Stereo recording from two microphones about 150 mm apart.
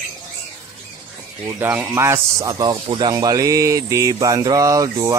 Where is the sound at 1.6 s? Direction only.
10° right (ahead or behind).